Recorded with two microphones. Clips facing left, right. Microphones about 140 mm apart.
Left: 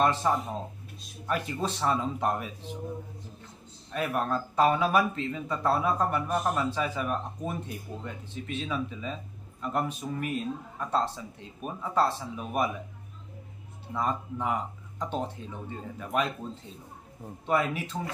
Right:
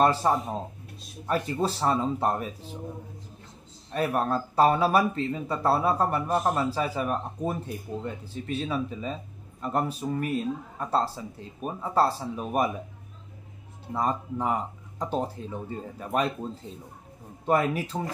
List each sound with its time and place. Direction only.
0.0 s speech: 35° right (ahead or behind)
3.9 s speech: 35° right (ahead or behind)
13.9 s speech: 35° right (ahead or behind)
17.5 s speech: 40° right (ahead or behind)